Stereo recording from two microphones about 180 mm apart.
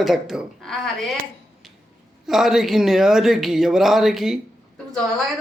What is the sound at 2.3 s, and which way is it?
Speech, centre (ahead or behind).